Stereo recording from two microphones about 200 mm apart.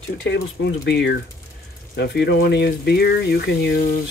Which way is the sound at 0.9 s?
55° left (ahead or behind).